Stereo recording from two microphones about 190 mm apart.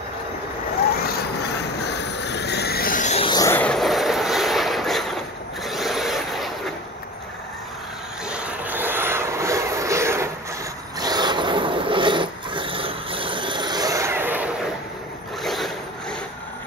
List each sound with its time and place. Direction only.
1.0 s vehicle: 55° left (ahead or behind); by 3.3 s 40° left (ahead or behind)
3.3 s train: 15° left (ahead or behind); by 6.5 s centre (ahead or behind)
8.3 s vehicle: 5° right (ahead or behind)
11.0 s a sound: 20° right (ahead or behind)
15.4 s zipper: centre (ahead or behind)